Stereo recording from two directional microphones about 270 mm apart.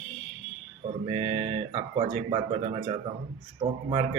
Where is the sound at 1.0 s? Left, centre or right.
Right.